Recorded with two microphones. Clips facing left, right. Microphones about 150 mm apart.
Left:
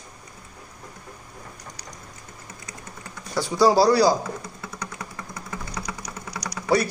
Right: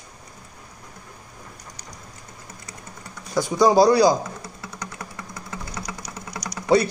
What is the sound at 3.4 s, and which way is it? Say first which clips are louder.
Speech: right 2 dB; 15° right (ahead or behind).